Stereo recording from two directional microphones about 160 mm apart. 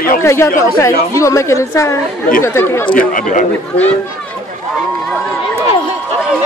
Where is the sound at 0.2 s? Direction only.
15° left (ahead or behind).